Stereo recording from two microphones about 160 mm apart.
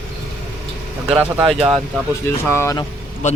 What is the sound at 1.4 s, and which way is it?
Speech, 35° right (ahead or behind).